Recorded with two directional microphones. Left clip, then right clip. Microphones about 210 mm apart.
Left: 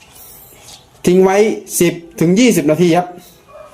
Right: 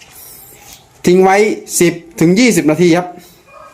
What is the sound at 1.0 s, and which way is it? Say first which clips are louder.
Speech: right 2 dB; 10° right (ahead or behind).